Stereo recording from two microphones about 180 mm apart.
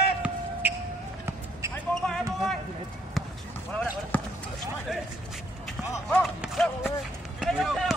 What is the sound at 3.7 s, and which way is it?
Basketball bounce, 5° left (ahead or behind).